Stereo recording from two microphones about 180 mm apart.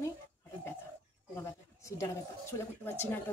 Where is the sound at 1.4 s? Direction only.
15° left (ahead or behind).